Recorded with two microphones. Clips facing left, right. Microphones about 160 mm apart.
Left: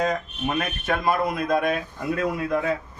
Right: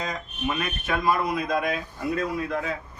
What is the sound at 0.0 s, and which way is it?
A man's voice, 55° left (ahead or behind).